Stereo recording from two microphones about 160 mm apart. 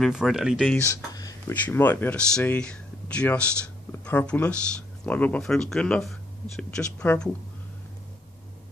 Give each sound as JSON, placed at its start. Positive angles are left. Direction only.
{"t": 0.0, "sound": "speech", "side_deg": 0}
{"t": 0.8, "sound": "speech", "side_deg": 25}
{"t": 1.5, "sound": "speech", "side_deg": 10}